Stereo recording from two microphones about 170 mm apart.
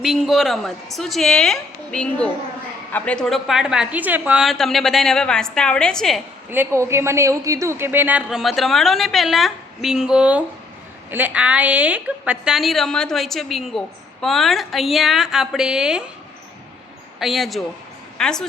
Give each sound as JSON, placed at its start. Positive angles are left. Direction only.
{"t": 0.0, "sound": "a woman's voice", "side_deg": 0}
{"t": 6.5, "sound": "a woman's voice", "side_deg": -15}
{"t": 17.2, "sound": "a woman's voice", "side_deg": 0}